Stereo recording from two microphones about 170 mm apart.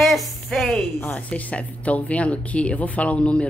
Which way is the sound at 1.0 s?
5° left (ahead or behind).